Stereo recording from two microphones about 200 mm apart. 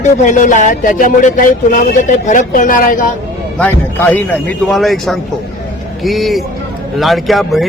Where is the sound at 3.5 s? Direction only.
5° left (ahead or behind).